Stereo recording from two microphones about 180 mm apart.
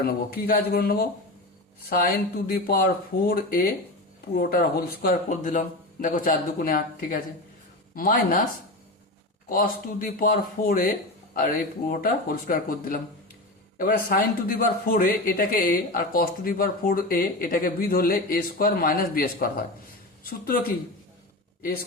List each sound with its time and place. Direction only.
0.0 s speech: 55° left (ahead or behind)
9.5 s speech: 50° left (ahead or behind)